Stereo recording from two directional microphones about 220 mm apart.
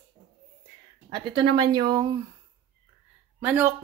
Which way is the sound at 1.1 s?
20° right (ahead or behind).